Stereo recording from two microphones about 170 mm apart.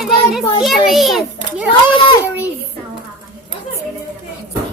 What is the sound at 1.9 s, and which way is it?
Speech, 30° left (ahead or behind).